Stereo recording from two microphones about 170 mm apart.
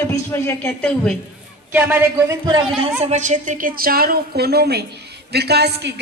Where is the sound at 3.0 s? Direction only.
45° right (ahead or behind).